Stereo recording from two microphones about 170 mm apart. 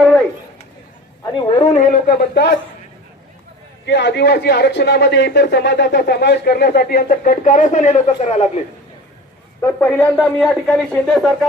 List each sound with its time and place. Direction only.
1.5 s speech: 40° left (ahead or behind); by 2.6 s 70° left (ahead or behind)
3.8 s speech: 90° left; by 8.4 s 40° left (ahead or behind)
9.6 s speech: 15° left (ahead or behind)